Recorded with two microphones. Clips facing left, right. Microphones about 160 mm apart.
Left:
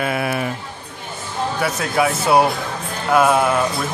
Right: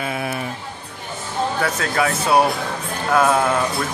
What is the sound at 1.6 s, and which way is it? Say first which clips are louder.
Speech: left 4 dB; 15° left (ahead or behind).